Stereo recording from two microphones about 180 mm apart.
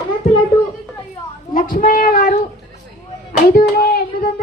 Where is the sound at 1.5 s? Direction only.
50° left (ahead or behind).